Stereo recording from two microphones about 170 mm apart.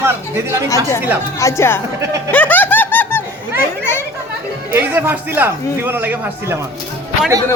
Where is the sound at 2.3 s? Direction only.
10° left (ahead or behind).